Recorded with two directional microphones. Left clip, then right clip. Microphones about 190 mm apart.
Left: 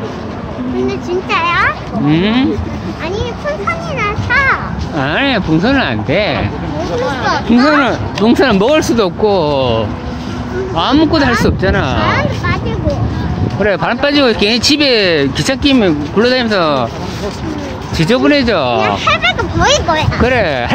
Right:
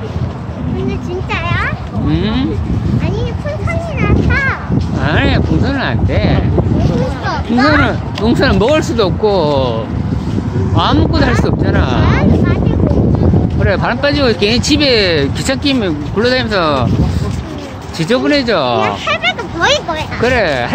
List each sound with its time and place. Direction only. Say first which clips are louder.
0.8 s a child's voice: left 4 dB; 35° left (ahead or behind)
2.0 s speech: left 4 dB; 10° left (ahead or behind)
4.0 s a child's voice: left 3 dB; 40° left (ahead or behind)
5.0 s speech: left 2 dB; 15° left (ahead or behind)
12.1 s speech: even; 25° left (ahead or behind)
13.6 s speech: left 3 dB; 10° left (ahead or behind)
17.9 s speech: left 2 dB; 15° left (ahead or behind)
18.8 s speech: left 2 dB; 35° left (ahead or behind)